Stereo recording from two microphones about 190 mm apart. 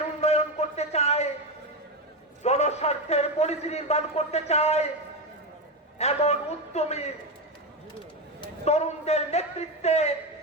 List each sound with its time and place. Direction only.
0.2 s a sound: 35° left (ahead or behind)
2.4 s a man's voice: 35° left (ahead or behind)
6.0 s a man's voice: 35° left (ahead or behind)
8.4 s a man's voice: 35° left (ahead or behind)